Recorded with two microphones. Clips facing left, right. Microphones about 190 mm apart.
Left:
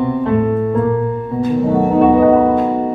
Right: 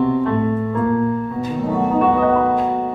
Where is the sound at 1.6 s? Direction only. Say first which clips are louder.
Left 3 dB; 30° left (ahead or behind).